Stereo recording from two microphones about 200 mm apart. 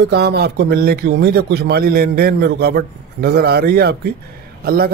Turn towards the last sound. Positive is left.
turn(degrees=-50)  # may be behind; listen again after turning